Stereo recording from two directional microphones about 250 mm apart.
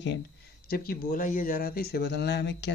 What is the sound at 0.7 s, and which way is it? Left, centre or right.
Speech, left.